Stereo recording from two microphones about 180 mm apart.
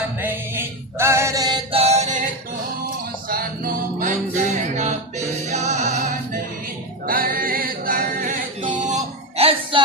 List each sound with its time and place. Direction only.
0.2 s music: 10° right (ahead or behind); by 2.3 s 45° right (ahead or behind)
3.2 s music: 55° right (ahead or behind)
7.1 s singing: 50° right (ahead or behind); by 9.8 s 35° right (ahead or behind)